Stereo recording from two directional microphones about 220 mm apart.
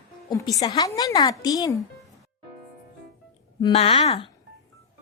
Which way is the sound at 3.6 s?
25° left (ahead or behind).